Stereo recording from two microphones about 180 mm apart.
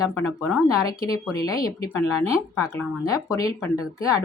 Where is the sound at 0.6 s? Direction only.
20° left (ahead or behind).